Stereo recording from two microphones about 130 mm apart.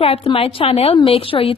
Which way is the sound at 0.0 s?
45° left (ahead or behind).